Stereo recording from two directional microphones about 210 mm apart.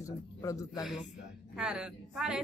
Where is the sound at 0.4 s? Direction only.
15° left (ahead or behind).